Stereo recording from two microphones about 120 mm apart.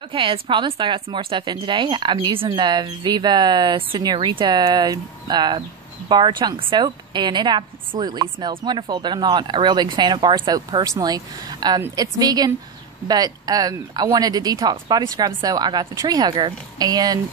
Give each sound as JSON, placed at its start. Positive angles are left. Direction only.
{"t": 0.1, "sound": "a woman's voice", "side_deg": -45}